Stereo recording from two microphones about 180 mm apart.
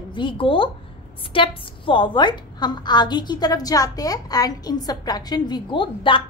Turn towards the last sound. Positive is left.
turn(degrees=25)  # may be behind; listen again after turning